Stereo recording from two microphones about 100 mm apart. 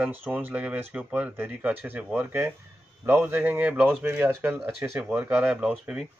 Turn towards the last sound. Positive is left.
turn(degrees=-10)  # may be behind; listen again after turning